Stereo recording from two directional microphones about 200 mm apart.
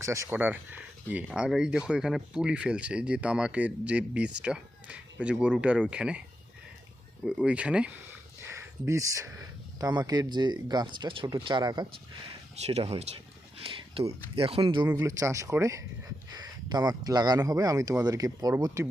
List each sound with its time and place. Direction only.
0.0 s speech: 15° right (ahead or behind)
7.3 s speech: 5° right (ahead or behind)
8.4 s a sound: 15° right (ahead or behind)
9.8 s speech: 20° right (ahead or behind)
12.6 s speech: 30° right (ahead or behind)
14.8 s speech: 15° right (ahead or behind)